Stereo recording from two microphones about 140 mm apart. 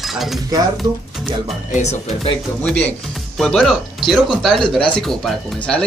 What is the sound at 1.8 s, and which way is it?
Speech, 50° left (ahead or behind).